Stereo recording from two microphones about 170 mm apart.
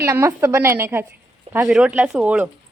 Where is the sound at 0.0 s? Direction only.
15° right (ahead or behind).